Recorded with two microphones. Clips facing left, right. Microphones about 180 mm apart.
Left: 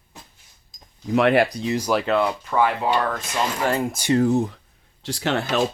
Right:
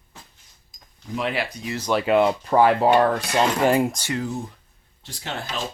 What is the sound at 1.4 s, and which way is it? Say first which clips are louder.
Speech: left 7 dB; 35° left (ahead or behind).